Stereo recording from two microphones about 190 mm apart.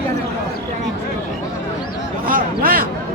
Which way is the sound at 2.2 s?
50° right (ahead or behind).